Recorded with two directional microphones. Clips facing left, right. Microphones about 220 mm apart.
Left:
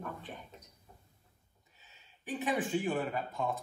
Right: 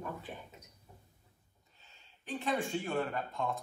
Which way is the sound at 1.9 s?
15° left (ahead or behind).